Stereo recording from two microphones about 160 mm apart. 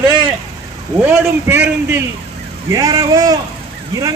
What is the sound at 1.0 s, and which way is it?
A man's voice, 15° right (ahead or behind).